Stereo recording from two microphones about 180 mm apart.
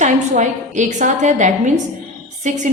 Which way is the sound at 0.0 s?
40° right (ahead or behind).